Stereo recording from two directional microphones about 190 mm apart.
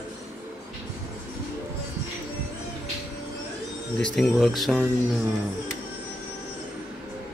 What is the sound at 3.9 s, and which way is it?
Speech, 5° left (ahead or behind).